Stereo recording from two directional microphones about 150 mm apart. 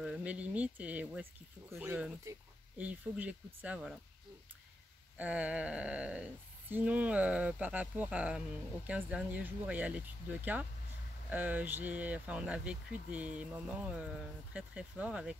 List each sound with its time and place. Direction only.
0.0 s speech: 5° right (ahead or behind)
5.1 s speech: 10° right (ahead or behind)